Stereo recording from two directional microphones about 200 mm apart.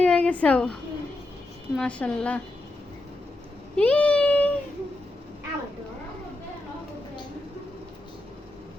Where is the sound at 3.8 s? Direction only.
5° left (ahead or behind).